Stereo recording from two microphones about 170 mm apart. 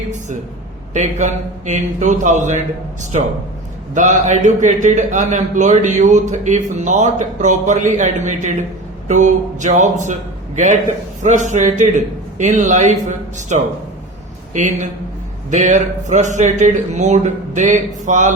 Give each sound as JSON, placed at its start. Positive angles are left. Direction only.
{"t": 0.9, "sound": "a man's voice", "side_deg": -45}